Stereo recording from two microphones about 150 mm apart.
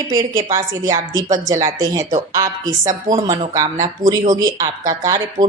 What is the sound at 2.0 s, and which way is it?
Speech, 50° right (ahead or behind).